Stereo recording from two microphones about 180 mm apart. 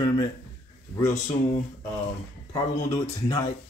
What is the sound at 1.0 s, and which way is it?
Speech, 40° left (ahead or behind).